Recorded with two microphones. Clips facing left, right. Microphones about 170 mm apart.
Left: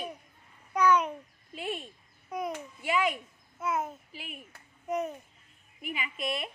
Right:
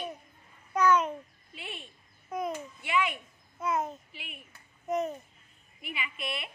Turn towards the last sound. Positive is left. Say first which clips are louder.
# left 3 dB
turn(degrees=40)  # may be behind; listen again after turning